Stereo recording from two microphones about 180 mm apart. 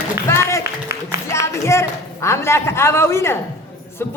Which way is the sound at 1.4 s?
15° left (ahead or behind).